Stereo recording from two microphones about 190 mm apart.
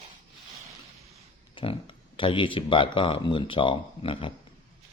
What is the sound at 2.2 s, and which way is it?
Speech, 25° left (ahead or behind).